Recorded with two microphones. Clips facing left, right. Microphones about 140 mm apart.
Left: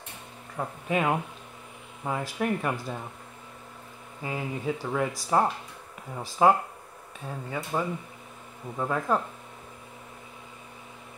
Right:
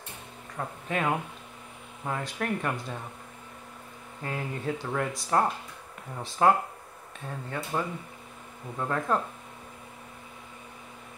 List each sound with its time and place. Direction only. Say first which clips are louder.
0.6 s speech: left 3 dB; 10° left (ahead or behind)
4.2 s speech: left 2 dB; 10° left (ahead or behind)